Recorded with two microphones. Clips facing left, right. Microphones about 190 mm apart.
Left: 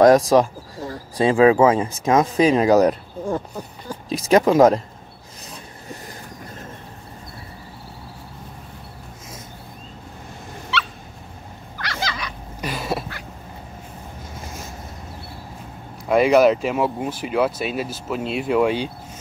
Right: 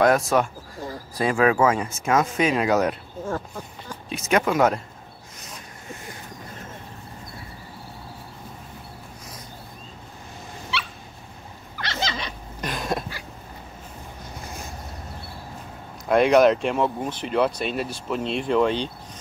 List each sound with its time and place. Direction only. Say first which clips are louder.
0.0 s speech: left 6 dB; 35° left (ahead or behind)
3.3 s speech: left 4 dB; 15° left (ahead or behind)
4.1 s speech: left 6 dB; 35° left (ahead or behind)
5.5 s vehicle: left 3 dB; 35° left (ahead or behind)
11.8 s a sound: even; 25° right (ahead or behind)
12.5 s cough: left 2 dB; 5° left (ahead or behind)
16.1 s speech: left 2 dB; 5° left (ahead or behind)